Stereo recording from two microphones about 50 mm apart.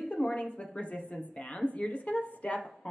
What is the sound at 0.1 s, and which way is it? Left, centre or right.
A woman's voice, left.